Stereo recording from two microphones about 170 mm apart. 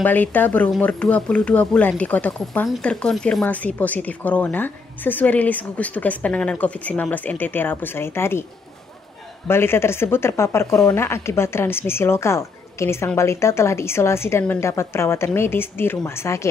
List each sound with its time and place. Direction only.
0.0 s speech: 10° left (ahead or behind)
9.5 s speech: 15° left (ahead or behind)